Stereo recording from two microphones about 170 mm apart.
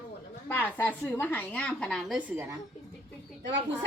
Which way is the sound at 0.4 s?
10° left (ahead or behind).